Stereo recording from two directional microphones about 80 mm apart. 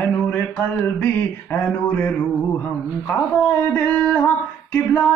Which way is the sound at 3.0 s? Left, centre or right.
Centre.